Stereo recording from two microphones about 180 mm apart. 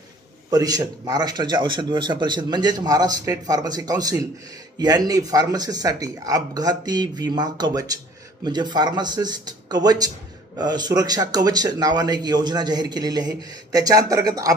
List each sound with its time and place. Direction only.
0.5 s a man's voice: 20° right (ahead or behind)